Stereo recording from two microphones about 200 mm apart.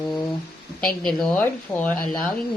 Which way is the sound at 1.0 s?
Centre (ahead or behind).